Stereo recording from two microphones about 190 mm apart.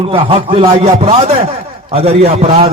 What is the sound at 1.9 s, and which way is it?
Music, 30° right (ahead or behind).